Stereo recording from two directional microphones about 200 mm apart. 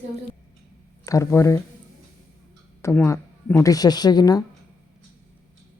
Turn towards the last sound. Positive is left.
turn(degrees=20)  # may be behind; listen again after turning